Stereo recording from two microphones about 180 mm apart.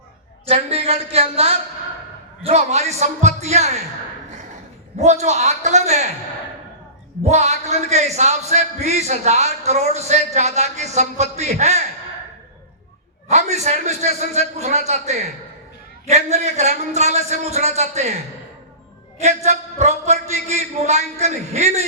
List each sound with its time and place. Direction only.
0.4 s speech: 35° right (ahead or behind)
4.9 s speech: 40° right (ahead or behind)
7.3 s speech: 40° right (ahead or behind)
13.2 s speech: 40° right (ahead or behind)
19.2 s speech: 40° right (ahead or behind)